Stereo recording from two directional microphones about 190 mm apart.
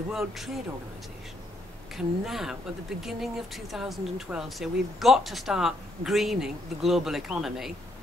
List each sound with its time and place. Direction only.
0.1 s speech: centre (ahead or behind)
2.0 s speech: centre (ahead or behind)